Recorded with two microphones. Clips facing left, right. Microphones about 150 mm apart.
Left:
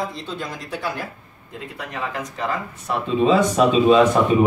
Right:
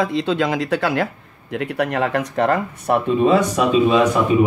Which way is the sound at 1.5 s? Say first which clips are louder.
Right 11 dB; 75° right (ahead or behind).